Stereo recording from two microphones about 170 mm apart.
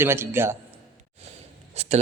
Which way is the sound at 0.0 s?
15° right (ahead or behind).